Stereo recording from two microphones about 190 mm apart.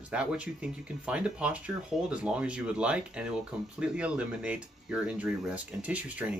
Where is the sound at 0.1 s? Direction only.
5° right (ahead or behind).